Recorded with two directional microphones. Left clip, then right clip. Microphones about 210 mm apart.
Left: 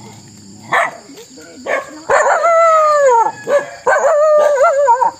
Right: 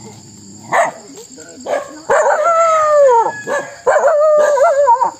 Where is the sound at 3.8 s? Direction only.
45° left (ahead or behind).